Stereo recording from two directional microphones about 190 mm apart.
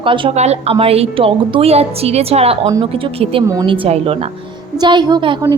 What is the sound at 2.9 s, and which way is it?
Speech, 30° right (ahead or behind).